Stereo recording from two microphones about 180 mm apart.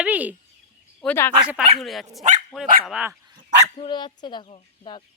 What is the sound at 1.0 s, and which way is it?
Speech, 15° left (ahead or behind).